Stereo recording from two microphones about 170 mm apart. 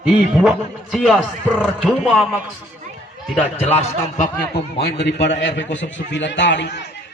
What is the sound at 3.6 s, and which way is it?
Speech, 35° left (ahead or behind).